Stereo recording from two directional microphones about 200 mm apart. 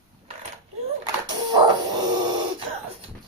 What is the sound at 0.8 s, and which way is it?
Dog, 20° right (ahead or behind).